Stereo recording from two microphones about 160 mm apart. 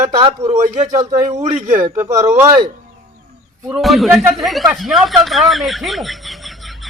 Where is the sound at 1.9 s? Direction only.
20° right (ahead or behind).